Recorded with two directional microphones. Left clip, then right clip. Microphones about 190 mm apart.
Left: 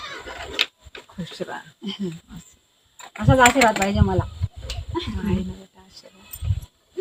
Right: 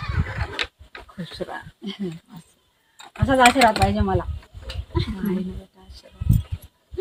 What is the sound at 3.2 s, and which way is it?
Speech, 15° left (ahead or behind).